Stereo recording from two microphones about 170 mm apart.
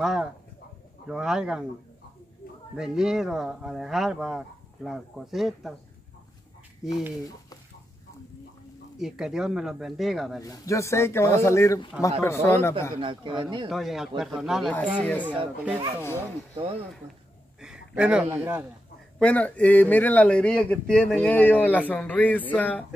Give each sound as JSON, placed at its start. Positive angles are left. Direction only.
{"t": 0.0, "sound": "speech", "side_deg": -5}
{"t": 2.7, "sound": "speech", "side_deg": -5}
{"t": 6.8, "sound": "speech", "side_deg": 0}
{"t": 8.9, "sound": "speech", "side_deg": 0}
{"t": 10.4, "sound": "a man's voice", "side_deg": 20}
{"t": 13.0, "sound": "speech", "side_deg": -30}
{"t": 13.7, "sound": "speech", "side_deg": 0}
{"t": 15.0, "sound": "a man's voice", "side_deg": 10}
{"t": 15.2, "sound": "speech", "side_deg": -10}
{"t": 17.6, "sound": "a sound", "side_deg": -5}
{"t": 18.2, "sound": "speech", "side_deg": -15}
{"t": 19.1, "sound": "a man's voice", "side_deg": 10}